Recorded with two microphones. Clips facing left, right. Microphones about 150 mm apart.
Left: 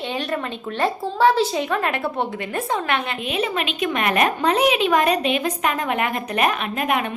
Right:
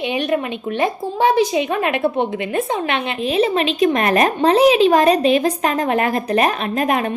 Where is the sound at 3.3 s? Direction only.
30° right (ahead or behind).